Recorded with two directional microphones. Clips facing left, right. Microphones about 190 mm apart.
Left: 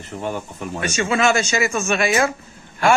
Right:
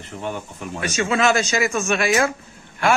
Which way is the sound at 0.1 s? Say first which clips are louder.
Left 2 dB; 45° left (ahead or behind).